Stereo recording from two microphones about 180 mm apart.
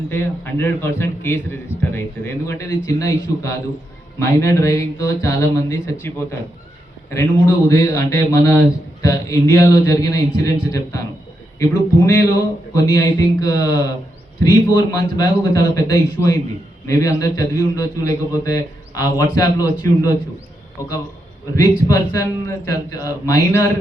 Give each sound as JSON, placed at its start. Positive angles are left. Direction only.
{"t": 0.1, "sound": "a man's voice", "side_deg": 10}
{"t": 21.5, "sound": "a man's voice", "side_deg": 20}